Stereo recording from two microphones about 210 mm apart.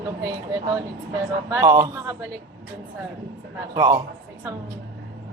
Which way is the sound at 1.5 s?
15° right (ahead or behind).